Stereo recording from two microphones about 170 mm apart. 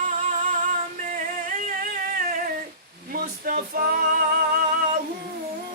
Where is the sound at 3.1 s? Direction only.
60° right (ahead or behind).